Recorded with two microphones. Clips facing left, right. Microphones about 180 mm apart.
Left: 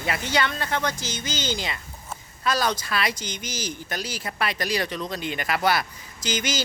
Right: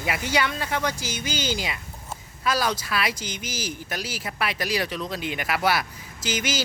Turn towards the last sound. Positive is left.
turn(degrees=-5)  # may be behind; listen again after turning